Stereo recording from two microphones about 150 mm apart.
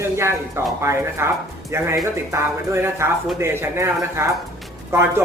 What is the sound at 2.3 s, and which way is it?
Speech, 15° right (ahead or behind).